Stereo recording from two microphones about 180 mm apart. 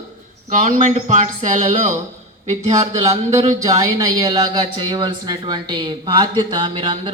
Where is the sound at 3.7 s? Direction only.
20° right (ahead or behind).